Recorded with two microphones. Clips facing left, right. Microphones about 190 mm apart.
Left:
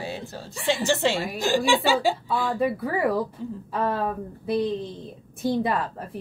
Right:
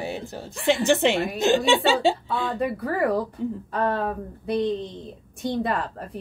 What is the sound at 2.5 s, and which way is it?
Speech, centre (ahead or behind).